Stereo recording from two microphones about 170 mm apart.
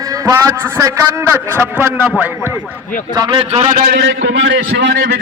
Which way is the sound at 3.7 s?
75° right (ahead or behind).